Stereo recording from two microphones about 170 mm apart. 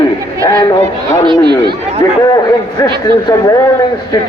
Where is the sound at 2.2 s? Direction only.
20° left (ahead or behind).